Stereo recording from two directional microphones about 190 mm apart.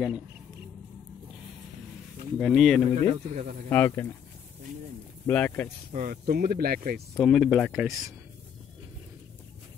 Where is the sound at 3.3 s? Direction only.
40° right (ahead or behind).